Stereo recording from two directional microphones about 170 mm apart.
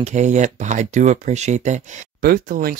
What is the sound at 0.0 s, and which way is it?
Speech, 45° right (ahead or behind).